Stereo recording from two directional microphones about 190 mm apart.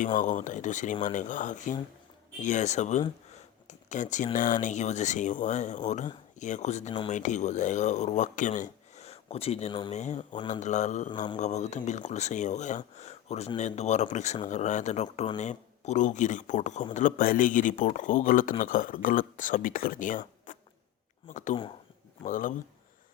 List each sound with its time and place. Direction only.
0.2 s speech: 40° left (ahead or behind)
3.3 s a sound: 40° left (ahead or behind)
4.4 s speech: 45° left (ahead or behind); by 9.9 s 30° left (ahead or behind)
9.9 s speech: 40° left (ahead or behind)
11.1 s mantra: 25° left (ahead or behind)
11.3 s speech: 35° left (ahead or behind)